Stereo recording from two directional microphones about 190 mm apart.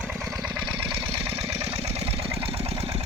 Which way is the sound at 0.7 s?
30° right (ahead or behind).